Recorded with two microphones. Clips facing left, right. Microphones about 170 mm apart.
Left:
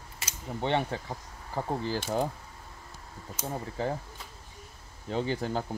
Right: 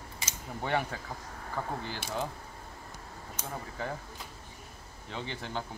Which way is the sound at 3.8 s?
30° left (ahead or behind).